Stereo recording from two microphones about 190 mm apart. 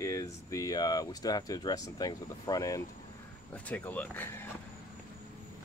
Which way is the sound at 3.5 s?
10° left (ahead or behind).